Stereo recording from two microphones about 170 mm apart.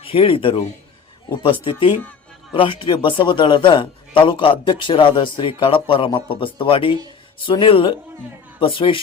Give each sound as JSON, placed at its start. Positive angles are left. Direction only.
{"t": 0.0, "sound": "a man's voice", "side_deg": 35}